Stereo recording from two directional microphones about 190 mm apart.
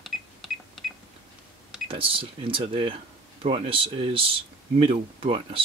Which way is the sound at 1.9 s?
30° right (ahead or behind).